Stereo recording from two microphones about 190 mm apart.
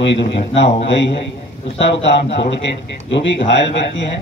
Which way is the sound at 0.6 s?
70° left (ahead or behind).